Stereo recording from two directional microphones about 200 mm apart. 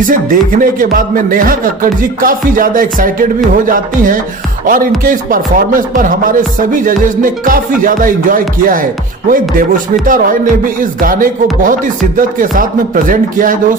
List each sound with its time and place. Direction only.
0.0 s speech: 45° right (ahead or behind)